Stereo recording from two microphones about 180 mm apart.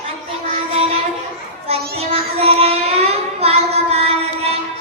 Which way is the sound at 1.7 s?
35° right (ahead or behind).